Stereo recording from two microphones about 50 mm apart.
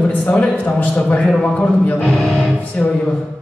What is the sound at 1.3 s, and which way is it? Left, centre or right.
Speech, centre.